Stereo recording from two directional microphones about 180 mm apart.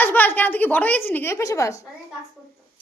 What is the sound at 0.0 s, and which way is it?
A woman's voice, 10° left (ahead or behind).